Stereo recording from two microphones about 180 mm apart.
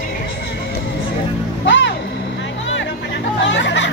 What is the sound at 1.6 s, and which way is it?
Music, 85° left.